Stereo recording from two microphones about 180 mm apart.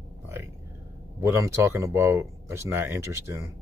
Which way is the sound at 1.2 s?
15° right (ahead or behind).